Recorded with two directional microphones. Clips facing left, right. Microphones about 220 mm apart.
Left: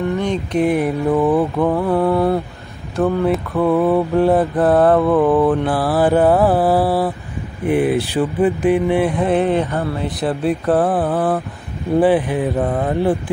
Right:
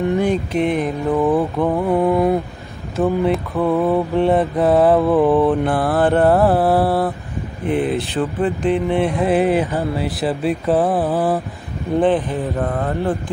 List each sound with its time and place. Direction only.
0.0 s mantra: 15° right (ahead or behind)
0.3 s mantra: centre (ahead or behind)
1.8 s mantra: 15° right (ahead or behind)
3.0 s mantra: centre (ahead or behind)
7.6 s speech: 10° left (ahead or behind)
8.9 s mantra: centre (ahead or behind)
12.0 s speech: 10° left (ahead or behind)